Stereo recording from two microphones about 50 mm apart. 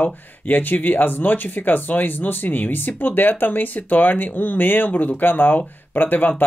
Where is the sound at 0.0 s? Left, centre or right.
Left.